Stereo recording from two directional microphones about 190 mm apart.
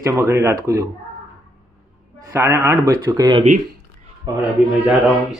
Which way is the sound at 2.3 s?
15° right (ahead or behind).